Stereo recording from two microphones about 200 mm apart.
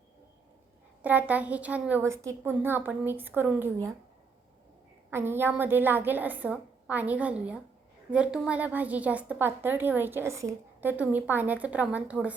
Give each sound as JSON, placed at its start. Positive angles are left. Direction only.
{"t": 1.0, "sound": "a woman's voice", "side_deg": -10}
{"t": 5.1, "sound": "a woman's voice", "side_deg": -10}